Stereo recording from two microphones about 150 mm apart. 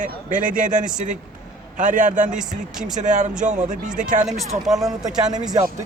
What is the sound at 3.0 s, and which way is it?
Speech, 55° right (ahead or behind).